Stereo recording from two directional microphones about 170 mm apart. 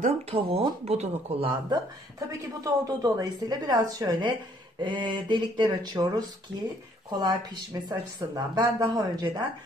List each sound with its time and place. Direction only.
0.0 s speech: 35° right (ahead or behind)
1.7 s a woman's voice: 20° right (ahead or behind)